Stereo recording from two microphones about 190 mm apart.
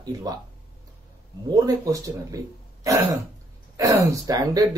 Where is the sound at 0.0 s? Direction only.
20° right (ahead or behind).